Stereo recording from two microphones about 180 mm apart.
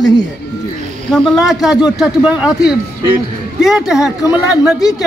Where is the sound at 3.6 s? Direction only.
Centre (ahead or behind).